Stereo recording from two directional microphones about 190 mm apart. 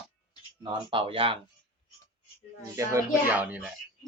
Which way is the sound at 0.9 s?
30° right (ahead or behind).